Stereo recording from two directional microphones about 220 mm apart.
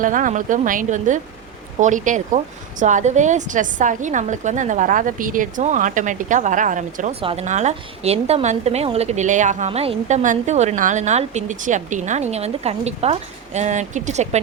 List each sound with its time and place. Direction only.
0.0 s speech: 35° right (ahead or behind)